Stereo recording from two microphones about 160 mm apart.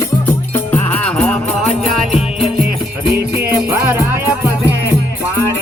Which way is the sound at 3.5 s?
15° right (ahead or behind).